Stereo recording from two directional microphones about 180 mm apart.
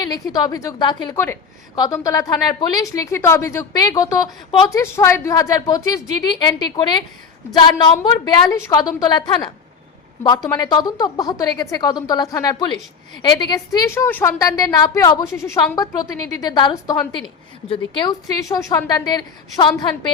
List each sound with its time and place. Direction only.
0.0 s a woman's voice: 20° left (ahead or behind)
10.5 s a woman's voice: 25° left (ahead or behind)